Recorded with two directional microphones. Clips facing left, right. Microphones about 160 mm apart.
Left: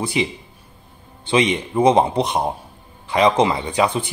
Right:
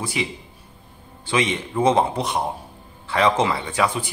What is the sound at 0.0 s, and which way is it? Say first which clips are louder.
Speech: left 5 dB; 20° left (ahead or behind).